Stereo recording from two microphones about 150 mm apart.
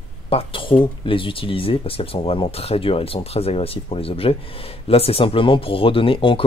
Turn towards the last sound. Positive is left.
turn(degrees=35)  # may be behind; listen again after turning